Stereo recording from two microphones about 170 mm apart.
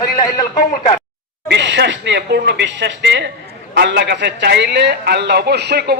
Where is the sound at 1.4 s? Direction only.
90° right; by 5.9 s 70° right (ahead or behind).